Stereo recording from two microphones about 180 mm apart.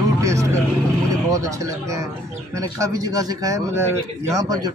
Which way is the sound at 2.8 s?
20° right (ahead or behind).